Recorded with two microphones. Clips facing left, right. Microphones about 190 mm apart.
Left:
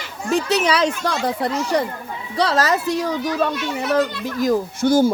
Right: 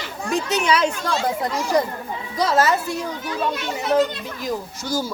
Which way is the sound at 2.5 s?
90° left.